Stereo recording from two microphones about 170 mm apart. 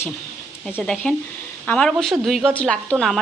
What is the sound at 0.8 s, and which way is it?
Speech, 5° left (ahead or behind).